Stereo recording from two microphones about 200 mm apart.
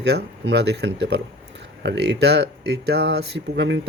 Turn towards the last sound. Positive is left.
turn(degrees=-65)  # may be behind; listen again after turning